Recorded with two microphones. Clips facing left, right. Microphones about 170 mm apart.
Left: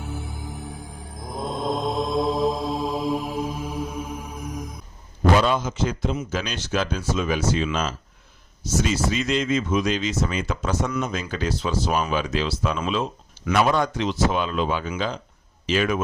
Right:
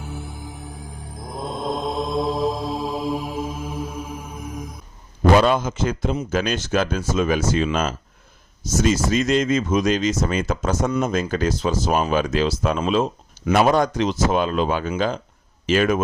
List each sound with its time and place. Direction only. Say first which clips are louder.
0.0 s music: even; centre (ahead or behind)
5.4 s speech: right 3 dB; 50° right (ahead or behind)